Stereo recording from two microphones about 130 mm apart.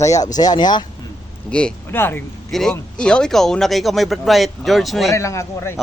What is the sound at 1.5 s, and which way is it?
Speech, 10° left (ahead or behind).